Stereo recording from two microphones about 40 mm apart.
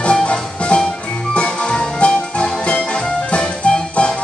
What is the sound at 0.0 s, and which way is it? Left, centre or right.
Music, left.